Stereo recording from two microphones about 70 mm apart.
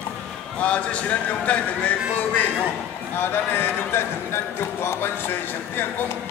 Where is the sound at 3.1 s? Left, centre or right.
Left.